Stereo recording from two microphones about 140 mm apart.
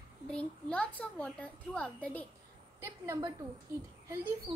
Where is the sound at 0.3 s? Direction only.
10° left (ahead or behind).